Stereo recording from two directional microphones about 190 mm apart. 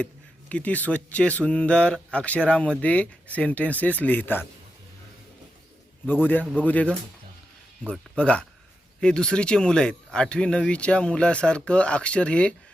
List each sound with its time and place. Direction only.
0.0 s speech: 5° left (ahead or behind)
6.1 s speech: 10° left (ahead or behind)